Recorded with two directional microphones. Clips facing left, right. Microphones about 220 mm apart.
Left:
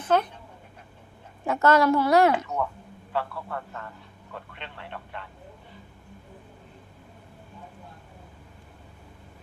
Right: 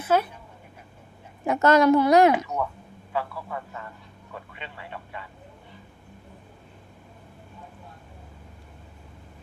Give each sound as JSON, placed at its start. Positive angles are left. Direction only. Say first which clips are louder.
{"t": 0.0, "sound": "dog", "louder": "right 1 dB", "side_deg": -10}
{"t": 1.5, "sound": "a woman's voice", "louder": "right 2 dB", "side_deg": -20}
{"t": 3.1, "sound": "a man's voice", "louder": "even", "side_deg": -5}